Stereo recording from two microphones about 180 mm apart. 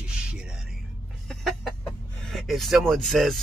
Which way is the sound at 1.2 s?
Centre (ahead or behind).